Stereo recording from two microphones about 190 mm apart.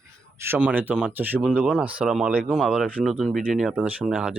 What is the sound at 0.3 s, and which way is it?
Speech, 10° right (ahead or behind).